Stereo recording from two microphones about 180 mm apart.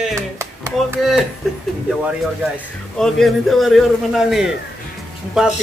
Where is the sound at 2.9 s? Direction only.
Centre (ahead or behind).